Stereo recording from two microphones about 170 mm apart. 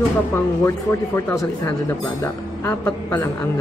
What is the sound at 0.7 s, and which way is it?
Speech, 15° left (ahead or behind).